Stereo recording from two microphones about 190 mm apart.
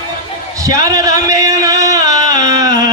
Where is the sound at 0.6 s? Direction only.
20° right (ahead or behind).